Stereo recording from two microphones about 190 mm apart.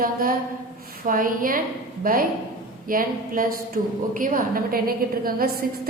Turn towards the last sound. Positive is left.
turn(degrees=-50)  # may be behind; listen again after turning